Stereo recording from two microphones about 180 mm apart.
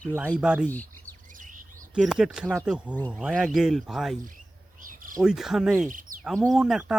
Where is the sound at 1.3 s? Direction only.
45° right (ahead or behind).